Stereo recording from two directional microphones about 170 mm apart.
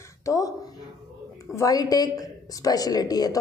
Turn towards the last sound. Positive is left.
turn(degrees=20)  # may be behind; listen again after turning